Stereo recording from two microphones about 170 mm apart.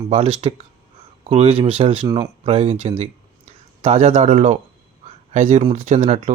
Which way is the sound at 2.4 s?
35° right (ahead or behind).